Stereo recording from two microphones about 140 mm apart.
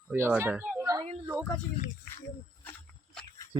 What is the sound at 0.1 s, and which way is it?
Speech, 15° right (ahead or behind).